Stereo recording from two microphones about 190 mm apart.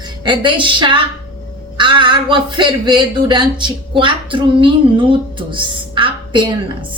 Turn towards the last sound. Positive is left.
turn(degrees=-25)  # may be behind; listen again after turning